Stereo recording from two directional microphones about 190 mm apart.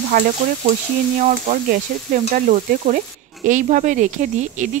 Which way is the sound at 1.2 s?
40° right (ahead or behind).